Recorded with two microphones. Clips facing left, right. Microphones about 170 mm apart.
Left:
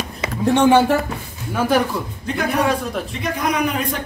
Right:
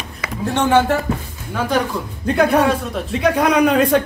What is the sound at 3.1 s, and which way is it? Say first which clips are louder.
Speech: right 11 dB; 80° right.